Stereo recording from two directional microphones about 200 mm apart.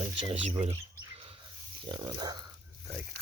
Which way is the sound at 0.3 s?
30° right (ahead or behind).